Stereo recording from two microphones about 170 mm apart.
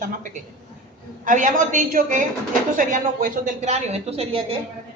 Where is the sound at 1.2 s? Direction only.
50° right (ahead or behind).